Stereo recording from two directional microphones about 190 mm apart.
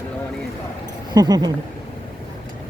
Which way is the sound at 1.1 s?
20° right (ahead or behind).